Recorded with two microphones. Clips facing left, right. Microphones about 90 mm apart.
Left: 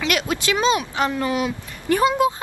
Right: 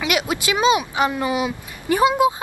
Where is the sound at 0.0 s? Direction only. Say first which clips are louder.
Right 1 dB; 10° right (ahead or behind).